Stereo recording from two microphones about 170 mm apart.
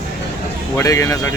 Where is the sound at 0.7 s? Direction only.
15° left (ahead or behind).